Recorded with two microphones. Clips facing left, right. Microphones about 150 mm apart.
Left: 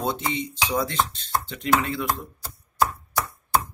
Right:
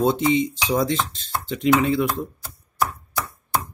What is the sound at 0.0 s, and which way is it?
Speech, 20° right (ahead or behind).